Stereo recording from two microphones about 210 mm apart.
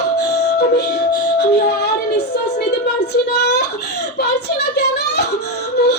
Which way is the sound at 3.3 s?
55° left (ahead or behind).